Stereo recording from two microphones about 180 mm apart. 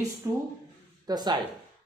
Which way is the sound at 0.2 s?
15° right (ahead or behind).